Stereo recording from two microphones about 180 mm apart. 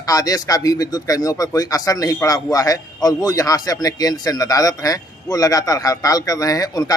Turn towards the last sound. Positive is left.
turn(degrees=20)  # may be behind; listen again after turning